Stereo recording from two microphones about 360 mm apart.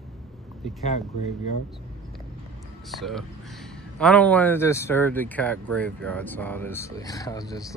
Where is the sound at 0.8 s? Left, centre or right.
Centre.